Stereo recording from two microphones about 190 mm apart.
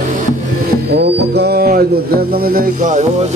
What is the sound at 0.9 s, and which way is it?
Mantra, 60° right (ahead or behind).